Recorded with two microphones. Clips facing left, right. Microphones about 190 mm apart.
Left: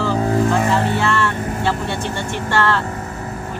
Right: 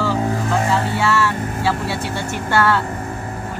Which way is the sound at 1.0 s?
5° right (ahead or behind).